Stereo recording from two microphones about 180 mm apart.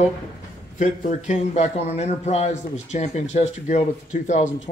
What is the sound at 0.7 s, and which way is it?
A man's voice, 45° left (ahead or behind).